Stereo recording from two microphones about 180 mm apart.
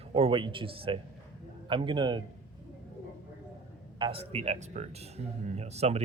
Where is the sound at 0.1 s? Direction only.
30° right (ahead or behind).